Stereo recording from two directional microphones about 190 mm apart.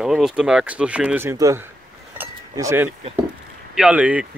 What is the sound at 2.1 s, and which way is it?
Chink, 15° right (ahead or behind).